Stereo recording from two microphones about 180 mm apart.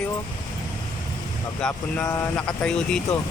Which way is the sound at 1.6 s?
5° left (ahead or behind).